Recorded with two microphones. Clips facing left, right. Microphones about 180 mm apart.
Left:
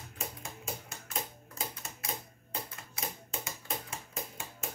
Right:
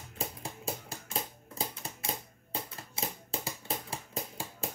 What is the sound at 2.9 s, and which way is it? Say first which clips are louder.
Typewriter: right 3 dB; 30° right (ahead or behind).